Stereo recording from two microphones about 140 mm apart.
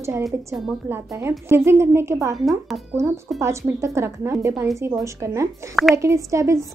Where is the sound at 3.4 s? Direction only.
20° right (ahead or behind).